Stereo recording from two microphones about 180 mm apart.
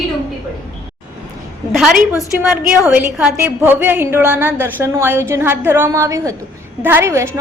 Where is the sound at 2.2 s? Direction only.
Centre (ahead or behind).